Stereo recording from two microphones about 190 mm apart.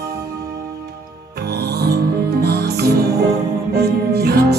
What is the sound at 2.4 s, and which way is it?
Music, 55° right (ahead or behind).